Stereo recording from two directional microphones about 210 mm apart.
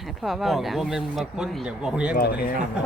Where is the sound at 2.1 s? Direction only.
45° left (ahead or behind).